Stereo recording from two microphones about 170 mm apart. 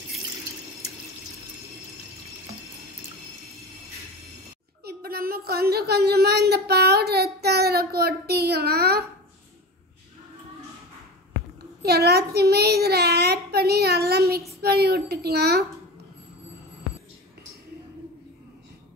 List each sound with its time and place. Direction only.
4.8 s speech: 60° right (ahead or behind)
11.8 s a child's voice: 70° right (ahead or behind)